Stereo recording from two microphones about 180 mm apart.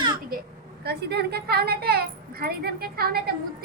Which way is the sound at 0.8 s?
65° right (ahead or behind).